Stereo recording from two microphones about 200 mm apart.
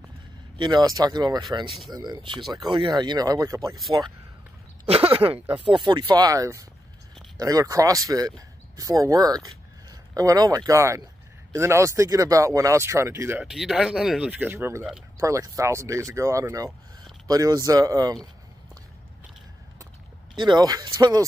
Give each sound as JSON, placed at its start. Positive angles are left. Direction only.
{"t": 0.6, "sound": "speech", "side_deg": -20}
{"t": 1.7, "sound": "speech", "side_deg": 0}
{"t": 2.0, "sound": "speech", "side_deg": -20}
{"t": 4.8, "sound": "a sound", "side_deg": -30}
{"t": 5.6, "sound": "speech", "side_deg": -25}
{"t": 20.3, "sound": "speech", "side_deg": -20}